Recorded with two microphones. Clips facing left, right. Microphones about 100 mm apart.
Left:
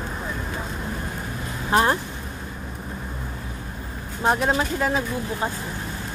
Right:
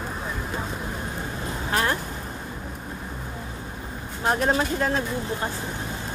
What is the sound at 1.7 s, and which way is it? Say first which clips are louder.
Speech: left 5 dB; 25° left (ahead or behind).